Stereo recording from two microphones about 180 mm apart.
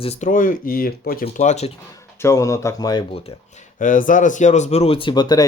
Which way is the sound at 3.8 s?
45° left (ahead or behind).